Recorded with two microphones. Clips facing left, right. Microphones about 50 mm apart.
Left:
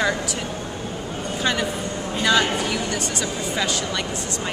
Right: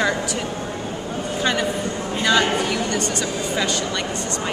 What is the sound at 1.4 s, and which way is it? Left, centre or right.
Speech, centre.